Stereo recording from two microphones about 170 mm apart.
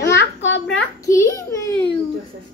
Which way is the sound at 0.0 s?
90° left.